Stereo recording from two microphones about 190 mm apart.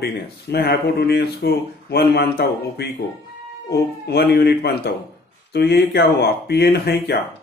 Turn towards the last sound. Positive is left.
turn(degrees=60)  # may be behind; listen again after turning